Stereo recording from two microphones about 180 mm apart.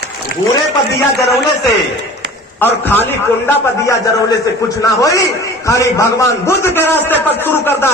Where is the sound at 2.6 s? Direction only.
10° left (ahead or behind).